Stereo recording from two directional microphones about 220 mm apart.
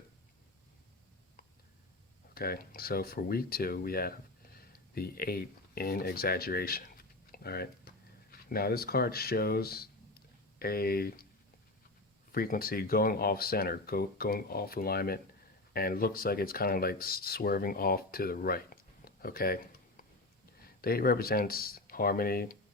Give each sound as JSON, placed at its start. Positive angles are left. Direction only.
{"t": 2.3, "sound": "speech", "side_deg": 45}
{"t": 12.3, "sound": "speech", "side_deg": 40}
{"t": 20.7, "sound": "speech", "side_deg": 45}